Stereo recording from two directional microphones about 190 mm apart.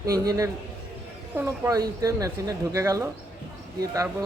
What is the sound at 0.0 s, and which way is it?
Speech, 20° right (ahead or behind).